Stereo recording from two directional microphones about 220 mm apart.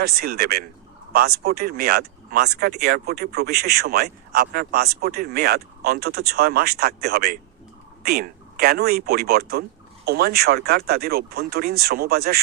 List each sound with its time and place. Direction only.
0.0 s speech: 45° right (ahead or behind)